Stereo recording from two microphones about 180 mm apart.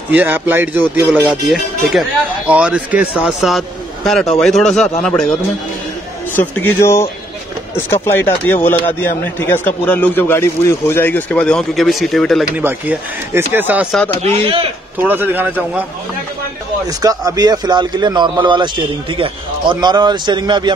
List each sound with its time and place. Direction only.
0.1 s speech: 10° right (ahead or behind)
6.3 s speech: 10° left (ahead or behind)
12.5 s speech: 10° right (ahead or behind)
15.0 s speech: 10° right (ahead or behind)
17.0 s a man's voice: 20° right (ahead or behind)